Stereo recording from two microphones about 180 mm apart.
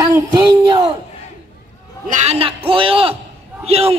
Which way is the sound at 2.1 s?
40° right (ahead or behind).